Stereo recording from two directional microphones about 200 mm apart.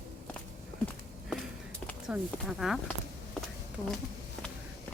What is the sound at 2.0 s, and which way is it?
Speech, centre (ahead or behind).